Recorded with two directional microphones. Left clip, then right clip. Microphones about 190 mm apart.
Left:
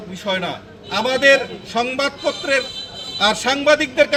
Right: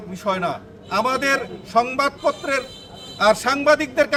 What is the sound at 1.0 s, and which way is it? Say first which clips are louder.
A man's voice: left 6 dB; 10° right (ahead or behind).